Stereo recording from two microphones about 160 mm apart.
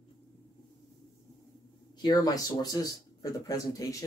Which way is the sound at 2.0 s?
25° left (ahead or behind).